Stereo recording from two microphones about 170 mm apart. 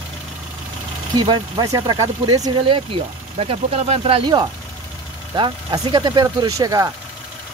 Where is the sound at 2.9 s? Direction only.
35° right (ahead or behind).